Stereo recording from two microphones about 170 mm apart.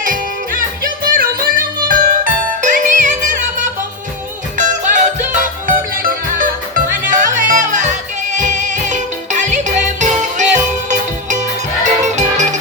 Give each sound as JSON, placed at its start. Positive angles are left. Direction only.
{"t": 0.0, "sound": "music", "side_deg": -55}